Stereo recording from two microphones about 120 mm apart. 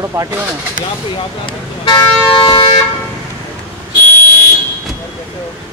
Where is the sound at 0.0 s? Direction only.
25° right (ahead or behind).